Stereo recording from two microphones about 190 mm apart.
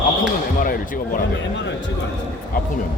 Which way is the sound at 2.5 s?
45° left (ahead or behind).